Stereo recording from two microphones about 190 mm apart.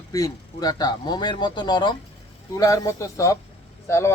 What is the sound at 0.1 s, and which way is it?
Speech, 20° left (ahead or behind).